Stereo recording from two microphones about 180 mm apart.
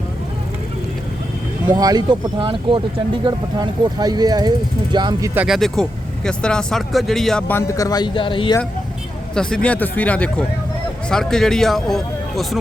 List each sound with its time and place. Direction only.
1.7 s speech: 20° right (ahead or behind)
5.3 s speech: 10° right (ahead or behind)
5.5 s speech: centre (ahead or behind); by 8.5 s 30° left (ahead or behind)
9.3 s speech: 5° left (ahead or behind)